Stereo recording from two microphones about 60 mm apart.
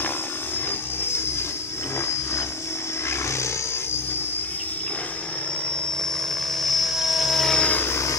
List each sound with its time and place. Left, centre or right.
6.6 s helicopter: centre
7.6 s vehicle: left